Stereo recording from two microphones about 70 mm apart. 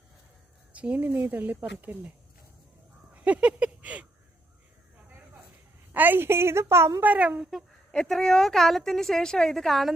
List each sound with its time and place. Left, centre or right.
0.7 s a sound: right
1.0 s speech: right
3.2 s speech: centre
5.9 s a woman's voice: right
7.0 s speech: right
7.9 s a woman's voice: centre